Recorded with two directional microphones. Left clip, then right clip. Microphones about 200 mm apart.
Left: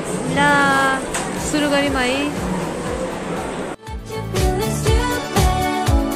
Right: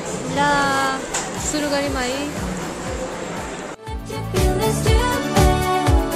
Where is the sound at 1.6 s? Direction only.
10° right (ahead or behind).